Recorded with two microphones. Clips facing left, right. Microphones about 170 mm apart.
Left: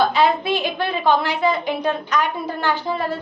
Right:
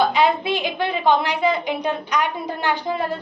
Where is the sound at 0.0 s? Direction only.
15° right (ahead or behind).